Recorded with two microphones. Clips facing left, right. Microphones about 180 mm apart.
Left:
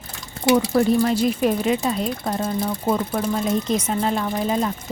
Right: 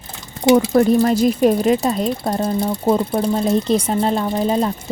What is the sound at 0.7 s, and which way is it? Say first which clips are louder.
Speech: right 4 dB; 45° right (ahead or behind).